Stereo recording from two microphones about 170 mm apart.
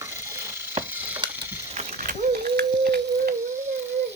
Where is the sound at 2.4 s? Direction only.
70° right (ahead or behind).